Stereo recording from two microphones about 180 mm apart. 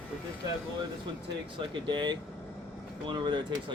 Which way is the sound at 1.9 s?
25° right (ahead or behind).